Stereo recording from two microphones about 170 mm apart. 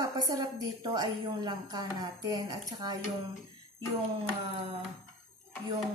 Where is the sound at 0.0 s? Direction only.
20° right (ahead or behind).